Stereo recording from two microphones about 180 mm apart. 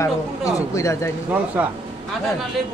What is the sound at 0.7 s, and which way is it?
Speech, 15° left (ahead or behind).